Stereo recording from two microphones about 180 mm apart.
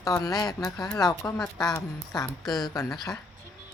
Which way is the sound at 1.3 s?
5° left (ahead or behind).